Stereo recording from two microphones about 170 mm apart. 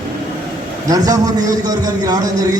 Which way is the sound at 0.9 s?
20° right (ahead or behind).